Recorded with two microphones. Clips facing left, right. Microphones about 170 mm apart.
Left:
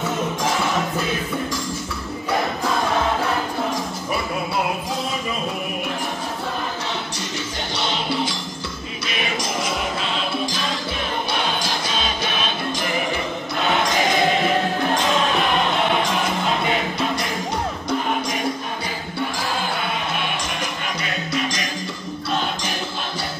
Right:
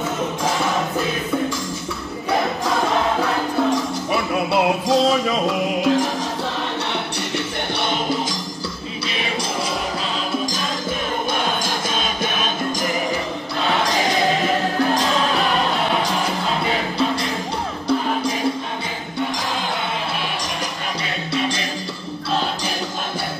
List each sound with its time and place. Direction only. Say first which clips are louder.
4.5 s music: right 6 dB; 80° right
7.3 s music: right 4 dB; 55° right (ahead or behind)
9.1 s music: even; 30° right (ahead or behind)
10.3 s music: right 1 dB; 45° right (ahead or behind)
21.3 s music: right 3 dB; 30° right (ahead or behind)